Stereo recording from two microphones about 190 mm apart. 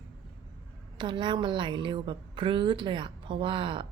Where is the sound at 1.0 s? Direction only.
25° right (ahead or behind).